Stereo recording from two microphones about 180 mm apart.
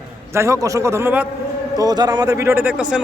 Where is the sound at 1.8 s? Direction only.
20° right (ahead or behind).